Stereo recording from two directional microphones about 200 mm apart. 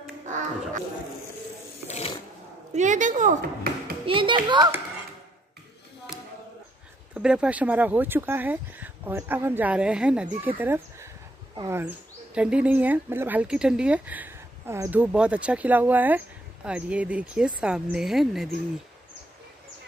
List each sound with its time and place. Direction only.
1.9 s ratchet: 30° left (ahead or behind)
2.7 s speech: 35° right (ahead or behind)
4.0 s a child's voice: 25° right (ahead or behind)
7.2 s a woman's voice: 5° right (ahead or behind)